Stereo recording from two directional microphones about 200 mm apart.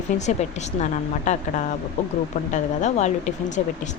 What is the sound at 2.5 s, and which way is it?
Speech, 35° left (ahead or behind).